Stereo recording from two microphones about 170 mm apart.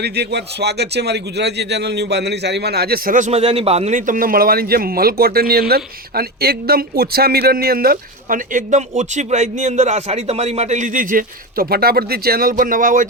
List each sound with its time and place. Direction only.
0.0 s a man's voice: 75° right (ahead or behind); by 13.1 s 50° right (ahead or behind)